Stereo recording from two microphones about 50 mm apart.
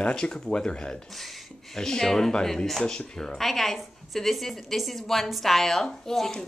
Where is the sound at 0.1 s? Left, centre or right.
Centre.